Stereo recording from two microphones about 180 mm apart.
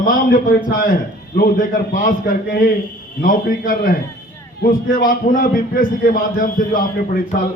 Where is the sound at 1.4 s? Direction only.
55° left (ahead or behind).